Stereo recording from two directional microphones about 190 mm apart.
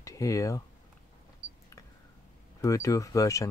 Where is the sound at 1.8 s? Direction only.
15° left (ahead or behind).